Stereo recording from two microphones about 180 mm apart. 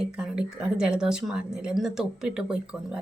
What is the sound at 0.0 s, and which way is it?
Speech, 5° right (ahead or behind).